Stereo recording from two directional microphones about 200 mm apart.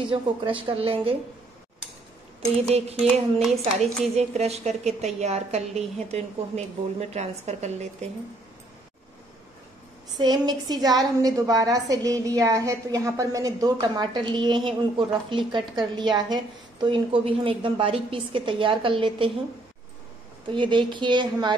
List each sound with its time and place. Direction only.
0.0 s a woman's voice: 25° right (ahead or behind)
3.8 s a woman's voice: 30° right (ahead or behind)
10.1 s a woman's voice: 20° right (ahead or behind)
20.4 s a woman's voice: 25° right (ahead or behind)